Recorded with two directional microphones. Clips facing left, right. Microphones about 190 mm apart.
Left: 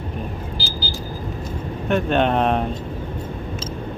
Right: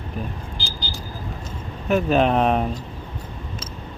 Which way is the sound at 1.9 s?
5° right (ahead or behind).